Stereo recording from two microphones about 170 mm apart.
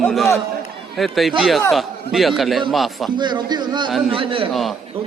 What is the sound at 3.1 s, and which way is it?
Speech, 25° right (ahead or behind).